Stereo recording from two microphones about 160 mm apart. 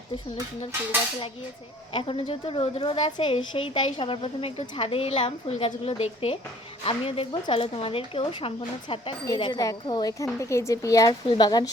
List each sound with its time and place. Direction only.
1.9 s a woman's voice: 35° left (ahead or behind)